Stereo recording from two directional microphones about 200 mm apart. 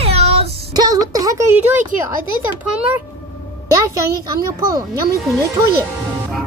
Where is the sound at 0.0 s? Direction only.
30° right (ahead or behind); by 1.8 s 10° right (ahead or behind).